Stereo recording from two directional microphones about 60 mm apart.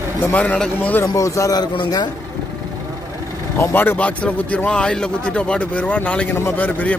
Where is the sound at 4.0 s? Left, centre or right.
Left.